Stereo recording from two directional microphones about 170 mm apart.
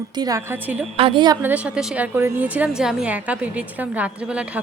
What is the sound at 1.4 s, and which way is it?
A woman's voice, 5° right (ahead or behind).